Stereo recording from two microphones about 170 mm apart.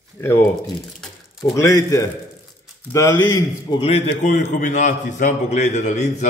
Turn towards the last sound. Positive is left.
turn(degrees=40)  # may be behind; listen again after turning